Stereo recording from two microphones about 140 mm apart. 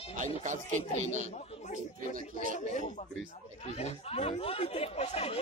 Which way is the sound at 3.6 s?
45° left (ahead or behind).